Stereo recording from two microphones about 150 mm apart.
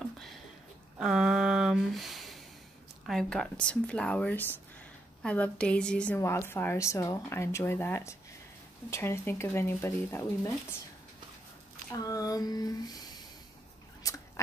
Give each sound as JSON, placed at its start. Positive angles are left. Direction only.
{"t": 0.9, "sound": "a woman's voice", "side_deg": -5}
{"t": 11.9, "sound": "speech", "side_deg": 25}
{"t": 14.0, "sound": "a sound", "side_deg": 20}